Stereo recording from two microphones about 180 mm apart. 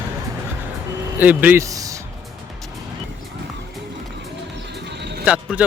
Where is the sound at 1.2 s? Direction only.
10° right (ahead or behind).